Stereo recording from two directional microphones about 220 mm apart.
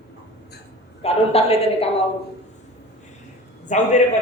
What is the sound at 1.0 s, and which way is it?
Speech, 25° left (ahead or behind).